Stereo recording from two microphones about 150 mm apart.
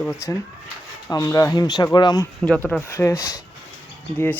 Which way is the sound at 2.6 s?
10° left (ahead or behind).